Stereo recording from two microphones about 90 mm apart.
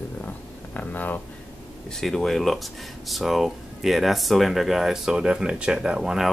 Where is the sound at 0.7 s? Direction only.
20° left (ahead or behind).